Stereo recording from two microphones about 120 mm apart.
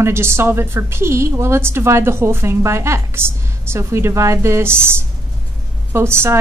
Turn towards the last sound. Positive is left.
turn(degrees=-20)  # may be behind; listen again after turning